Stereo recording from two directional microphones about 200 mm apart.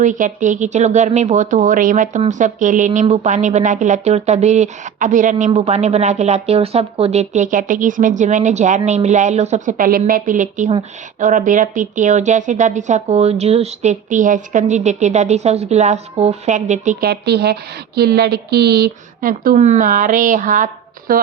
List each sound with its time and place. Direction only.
0.0 s a woman's voice: 40° right (ahead or behind)